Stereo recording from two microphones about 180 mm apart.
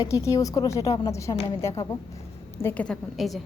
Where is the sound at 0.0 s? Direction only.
15° left (ahead or behind); by 3.4 s centre (ahead or behind).